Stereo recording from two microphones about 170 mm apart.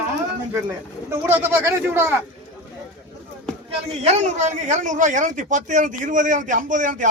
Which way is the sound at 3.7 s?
40° right (ahead or behind).